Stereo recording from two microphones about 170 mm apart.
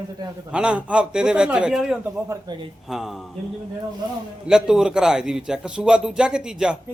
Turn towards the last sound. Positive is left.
turn(degrees=-5)  # may be behind; listen again after turning